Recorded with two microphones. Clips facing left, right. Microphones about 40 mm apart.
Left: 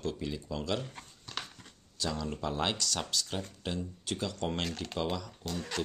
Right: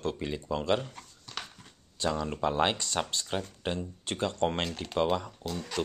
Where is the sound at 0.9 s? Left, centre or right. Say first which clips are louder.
Even; centre.